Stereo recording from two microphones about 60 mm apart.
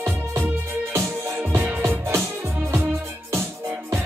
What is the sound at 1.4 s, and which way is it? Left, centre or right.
Music, right.